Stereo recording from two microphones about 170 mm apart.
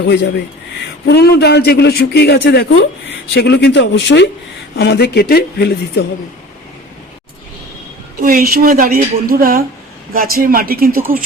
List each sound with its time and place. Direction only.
1.0 s speech: 75° left (ahead or behind); by 4.3 s 90° left
4.8 s speech: 80° left
8.2 s a woman's voice: 55° right (ahead or behind)